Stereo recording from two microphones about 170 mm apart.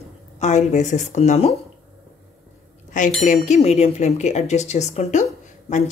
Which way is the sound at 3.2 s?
45° left (ahead or behind).